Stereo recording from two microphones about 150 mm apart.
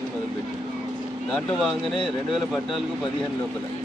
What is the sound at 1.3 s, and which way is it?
Speech, centre (ahead or behind).